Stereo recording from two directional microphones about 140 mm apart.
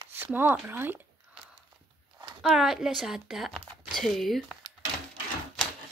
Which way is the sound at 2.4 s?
5° right (ahead or behind).